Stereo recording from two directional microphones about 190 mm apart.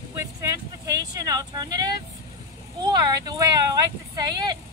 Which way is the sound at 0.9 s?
20° right (ahead or behind).